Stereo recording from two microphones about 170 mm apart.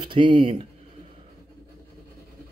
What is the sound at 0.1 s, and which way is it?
Speech, 30° right (ahead or behind).